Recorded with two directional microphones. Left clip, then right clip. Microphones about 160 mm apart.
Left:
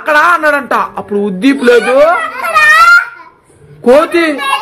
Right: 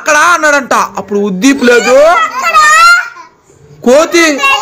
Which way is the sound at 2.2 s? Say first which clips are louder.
Right 3 dB; 30° right (ahead or behind).